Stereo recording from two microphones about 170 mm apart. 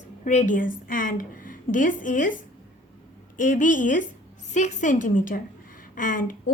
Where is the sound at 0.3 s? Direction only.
45° left (ahead or behind).